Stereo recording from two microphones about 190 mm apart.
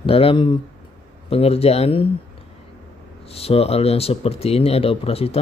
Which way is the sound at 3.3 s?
30° left (ahead or behind).